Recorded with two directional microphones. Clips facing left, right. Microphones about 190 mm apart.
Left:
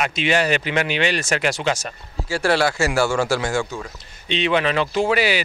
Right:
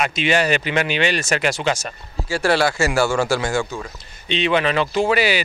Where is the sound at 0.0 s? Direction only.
15° right (ahead or behind).